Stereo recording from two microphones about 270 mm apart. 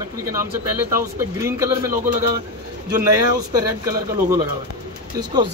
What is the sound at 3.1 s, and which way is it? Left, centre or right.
Speech, centre.